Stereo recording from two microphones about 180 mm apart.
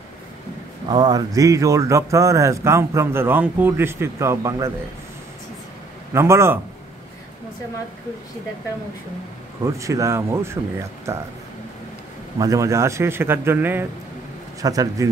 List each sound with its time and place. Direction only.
0.8 s speech: 20° right (ahead or behind)
6.1 s speech: 15° right (ahead or behind)
9.7 s speech: 15° right (ahead or behind)
12.4 s a man's voice: 15° right (ahead or behind)